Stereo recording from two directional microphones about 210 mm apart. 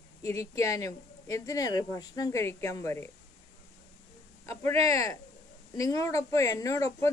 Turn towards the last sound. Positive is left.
turn(degrees=15)  # may be behind; listen again after turning